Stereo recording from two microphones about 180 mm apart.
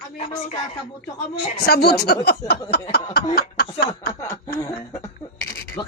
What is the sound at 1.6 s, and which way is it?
Speech, 60° left (ahead or behind).